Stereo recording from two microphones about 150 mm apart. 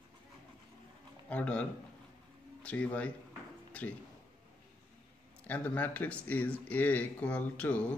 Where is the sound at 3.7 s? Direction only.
10° left (ahead or behind).